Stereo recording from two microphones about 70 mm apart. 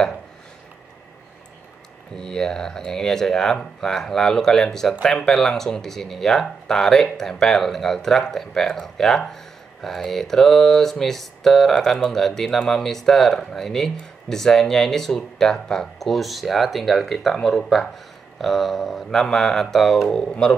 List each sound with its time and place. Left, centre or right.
2.1 s speech: centre